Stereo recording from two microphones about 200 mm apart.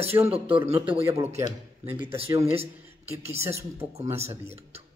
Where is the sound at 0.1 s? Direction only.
20° right (ahead or behind).